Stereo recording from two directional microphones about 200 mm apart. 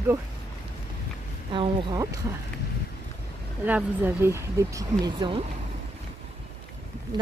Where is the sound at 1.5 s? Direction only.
25° right (ahead or behind).